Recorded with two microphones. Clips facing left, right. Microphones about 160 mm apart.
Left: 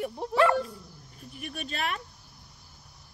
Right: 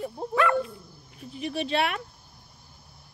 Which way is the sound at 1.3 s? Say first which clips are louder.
Right 10 dB; 50° left (ahead or behind).